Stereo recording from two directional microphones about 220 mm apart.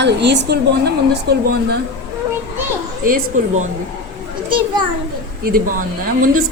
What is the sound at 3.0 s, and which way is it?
Speech, 35° right (ahead or behind).